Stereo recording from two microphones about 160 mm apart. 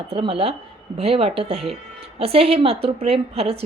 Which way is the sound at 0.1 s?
35° right (ahead or behind).